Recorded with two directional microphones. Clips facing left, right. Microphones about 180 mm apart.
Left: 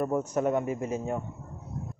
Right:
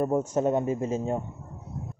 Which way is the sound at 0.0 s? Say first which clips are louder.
Right 2 dB; 30° right (ahead or behind).